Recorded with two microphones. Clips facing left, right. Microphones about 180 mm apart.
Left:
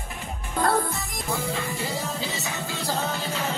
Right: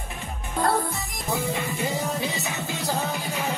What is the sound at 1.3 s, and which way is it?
Music, 20° right (ahead or behind).